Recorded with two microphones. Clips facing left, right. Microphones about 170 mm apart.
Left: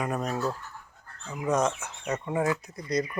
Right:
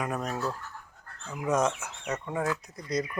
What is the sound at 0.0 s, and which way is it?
Speech, centre (ahead or behind).